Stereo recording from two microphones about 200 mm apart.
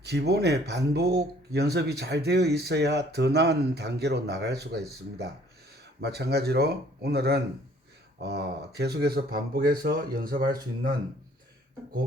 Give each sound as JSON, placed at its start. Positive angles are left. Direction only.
{"t": 0.0, "sound": "speech", "side_deg": -55}